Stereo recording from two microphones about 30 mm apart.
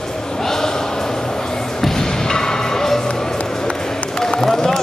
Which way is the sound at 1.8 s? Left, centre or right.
Centre.